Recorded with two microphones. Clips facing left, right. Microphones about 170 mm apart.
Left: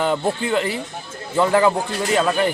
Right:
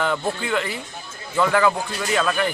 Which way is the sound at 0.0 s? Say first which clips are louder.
Left 3 dB; 25° left (ahead or behind).